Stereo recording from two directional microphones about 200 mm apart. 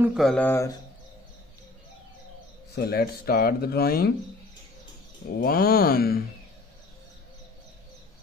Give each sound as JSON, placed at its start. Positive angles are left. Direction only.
{"t": 0.0, "sound": "speech", "side_deg": 0}
{"t": 2.7, "sound": "speech", "side_deg": 50}
{"t": 5.4, "sound": "speech", "side_deg": 50}